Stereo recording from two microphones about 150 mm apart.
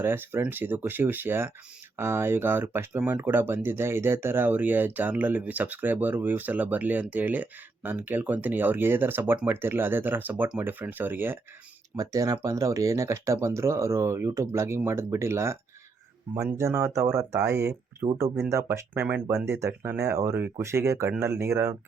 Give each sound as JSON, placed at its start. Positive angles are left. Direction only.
{"t": 0.0, "sound": "speech", "side_deg": -15}
{"t": 18.0, "sound": "speech", "side_deg": -35}
{"t": 18.4, "sound": "speech", "side_deg": -20}